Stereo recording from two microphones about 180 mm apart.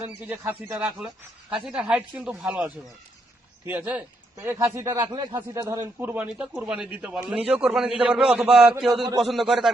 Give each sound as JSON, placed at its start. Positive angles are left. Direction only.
{"t": 0.0, "sound": "a man's voice", "side_deg": -10}